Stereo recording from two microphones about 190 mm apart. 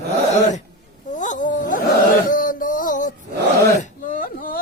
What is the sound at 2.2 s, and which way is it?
Music, 45° left (ahead or behind).